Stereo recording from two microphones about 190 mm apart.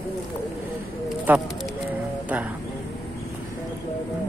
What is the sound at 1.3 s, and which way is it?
Speech, 10° right (ahead or behind).